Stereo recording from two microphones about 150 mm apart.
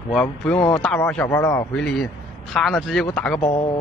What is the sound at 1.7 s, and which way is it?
Speech, 5° left (ahead or behind).